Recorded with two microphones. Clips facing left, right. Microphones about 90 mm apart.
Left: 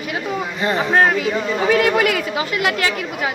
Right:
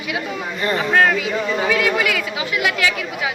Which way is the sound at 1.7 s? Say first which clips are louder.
Left 6 dB; 45° left (ahead or behind).